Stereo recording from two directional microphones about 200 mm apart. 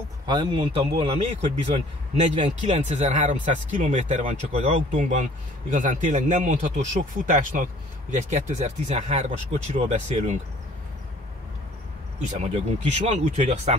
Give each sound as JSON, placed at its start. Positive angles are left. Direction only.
{"t": 0.3, "sound": "speech", "side_deg": -25}
{"t": 12.3, "sound": "speech", "side_deg": -35}